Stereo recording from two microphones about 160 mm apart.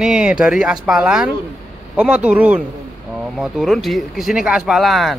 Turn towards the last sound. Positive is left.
turn(degrees=0)  # may be behind; listen again after turning